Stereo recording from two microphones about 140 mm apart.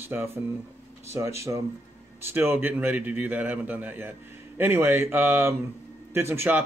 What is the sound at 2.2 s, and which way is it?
A man's voice, 15° right (ahead or behind).